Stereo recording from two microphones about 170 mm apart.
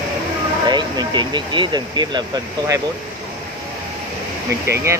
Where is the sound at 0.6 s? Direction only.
25° right (ahead or behind).